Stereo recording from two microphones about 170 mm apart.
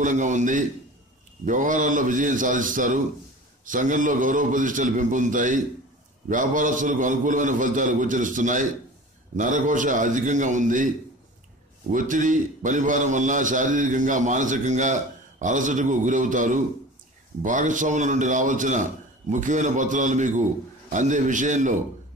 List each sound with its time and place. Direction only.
0.0 s a man's voice: 45° right (ahead or behind)
11.9 s a man's voice: 50° right (ahead or behind)